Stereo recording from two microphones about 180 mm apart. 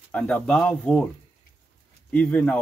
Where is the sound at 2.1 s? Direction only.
5° left (ahead or behind).